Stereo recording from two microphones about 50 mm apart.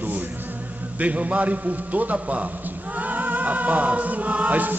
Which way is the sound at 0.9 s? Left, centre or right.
Right.